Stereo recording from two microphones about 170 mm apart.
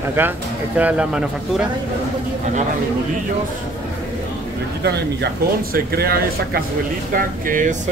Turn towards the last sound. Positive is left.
turn(degrees=-55)  # may be behind; listen again after turning